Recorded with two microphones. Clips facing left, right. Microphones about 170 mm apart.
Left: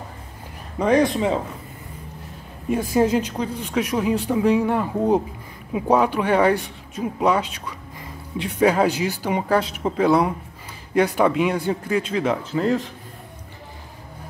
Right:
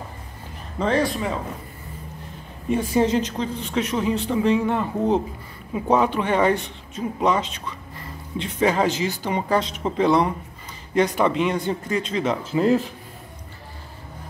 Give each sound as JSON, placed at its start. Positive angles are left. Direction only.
{"t": 0.7, "sound": "a man's voice", "side_deg": 15}
{"t": 2.7, "sound": "speech", "side_deg": 5}
{"t": 12.5, "sound": "a man's voice", "side_deg": -10}